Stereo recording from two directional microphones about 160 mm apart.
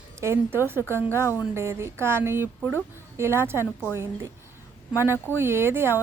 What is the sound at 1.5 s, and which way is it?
Speech, 15° right (ahead or behind).